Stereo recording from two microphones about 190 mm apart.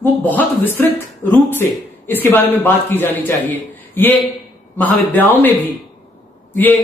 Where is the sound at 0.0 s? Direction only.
10° left (ahead or behind).